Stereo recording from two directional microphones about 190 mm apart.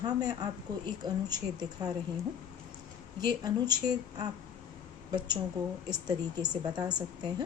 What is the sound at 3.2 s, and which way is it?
Speech, 20° right (ahead or behind).